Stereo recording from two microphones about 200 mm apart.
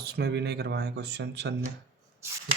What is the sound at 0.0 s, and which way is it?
Speech, 55° right (ahead or behind).